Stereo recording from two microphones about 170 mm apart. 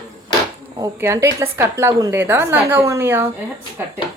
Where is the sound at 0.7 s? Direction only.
20° right (ahead or behind).